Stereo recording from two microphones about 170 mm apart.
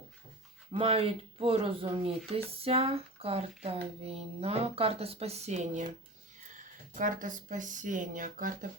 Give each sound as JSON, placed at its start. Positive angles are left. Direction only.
{"t": 0.7, "sound": "speech", "side_deg": -35}
{"t": 6.9, "sound": "speech", "side_deg": -50}